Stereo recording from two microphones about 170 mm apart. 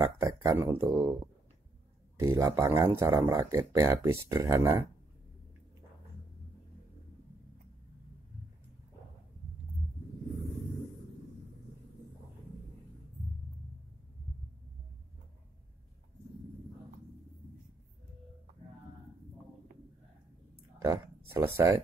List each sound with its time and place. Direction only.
0.0 s speech: 20° right (ahead or behind)
2.1 s speech: 20° right (ahead or behind)
20.8 s speech: 15° right (ahead or behind)